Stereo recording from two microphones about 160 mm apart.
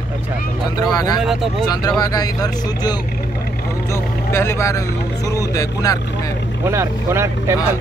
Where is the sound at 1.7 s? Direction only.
25° left (ahead or behind).